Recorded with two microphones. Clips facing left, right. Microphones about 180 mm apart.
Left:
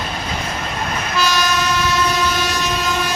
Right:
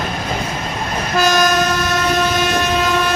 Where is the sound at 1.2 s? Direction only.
50° right (ahead or behind).